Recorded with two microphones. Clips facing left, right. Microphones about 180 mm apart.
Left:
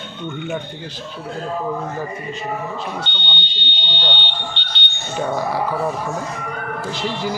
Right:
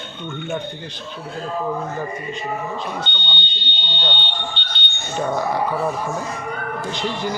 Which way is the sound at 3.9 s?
75° left (ahead or behind).